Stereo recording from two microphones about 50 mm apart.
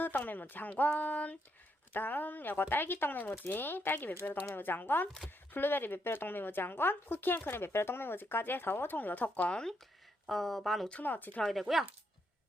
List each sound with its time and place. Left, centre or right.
0.0 s speech: left
0.7 s a sound: left
1.9 s speech: left
9.5 s speech: centre
10.2 s speech: centre
11.0 s speech: left
11.7 s speech: centre